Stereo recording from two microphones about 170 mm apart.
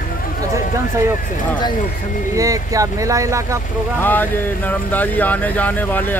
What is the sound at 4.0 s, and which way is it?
Speech, 10° left (ahead or behind).